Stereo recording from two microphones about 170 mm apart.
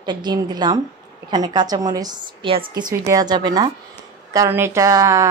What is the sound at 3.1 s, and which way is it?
A woman's voice, 20° right (ahead or behind).